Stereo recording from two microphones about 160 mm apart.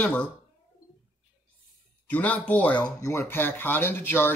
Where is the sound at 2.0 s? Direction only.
10° left (ahead or behind).